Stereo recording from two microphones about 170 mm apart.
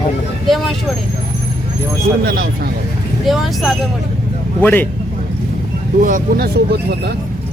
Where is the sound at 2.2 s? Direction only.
60° right (ahead or behind).